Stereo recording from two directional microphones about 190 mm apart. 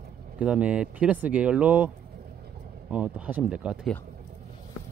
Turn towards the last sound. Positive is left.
turn(degrees=-5)  # may be behind; listen again after turning